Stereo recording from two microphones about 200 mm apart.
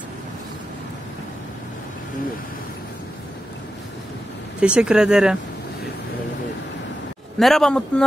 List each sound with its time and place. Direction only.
4.6 s speech: 5° right (ahead or behind)
7.3 s speech: centre (ahead or behind)